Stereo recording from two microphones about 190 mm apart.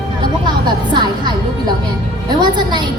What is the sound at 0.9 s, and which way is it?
Music, 25° right (ahead or behind).